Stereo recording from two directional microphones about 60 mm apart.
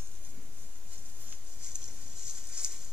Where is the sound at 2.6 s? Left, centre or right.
Centre.